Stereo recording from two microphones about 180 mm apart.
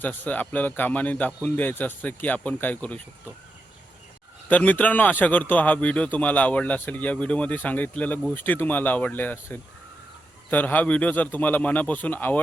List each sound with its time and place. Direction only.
0.0 s speech: 10° left (ahead or behind)
4.4 s speech: 10° left (ahead or behind)